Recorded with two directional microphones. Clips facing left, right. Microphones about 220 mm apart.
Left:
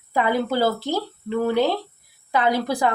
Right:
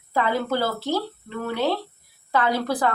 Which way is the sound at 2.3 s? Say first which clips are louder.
Left 2 dB; 15° left (ahead or behind).